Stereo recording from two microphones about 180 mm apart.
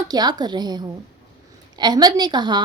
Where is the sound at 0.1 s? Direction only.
20° right (ahead or behind).